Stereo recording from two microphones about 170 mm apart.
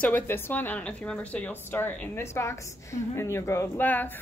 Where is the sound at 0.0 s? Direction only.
10° left (ahead or behind).